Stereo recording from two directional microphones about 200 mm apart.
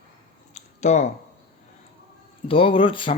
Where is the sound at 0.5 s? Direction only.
35° left (ahead or behind).